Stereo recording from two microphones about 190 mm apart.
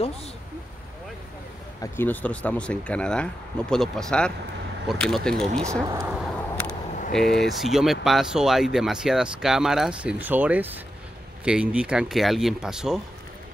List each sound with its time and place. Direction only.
1.8 s speech: 10° left (ahead or behind)
5.7 s speech: 15° right (ahead or behind)
6.2 s a sound: 5° left (ahead or behind)
7.1 s speech: centre (ahead or behind)